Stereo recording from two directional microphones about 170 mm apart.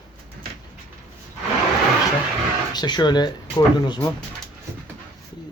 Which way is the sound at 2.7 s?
25° left (ahead or behind).